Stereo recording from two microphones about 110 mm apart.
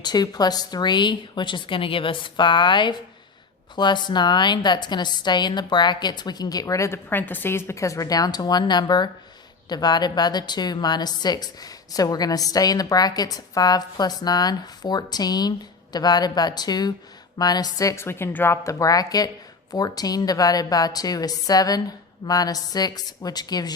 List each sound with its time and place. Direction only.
0.0 s a woman's voice: 40° left (ahead or behind)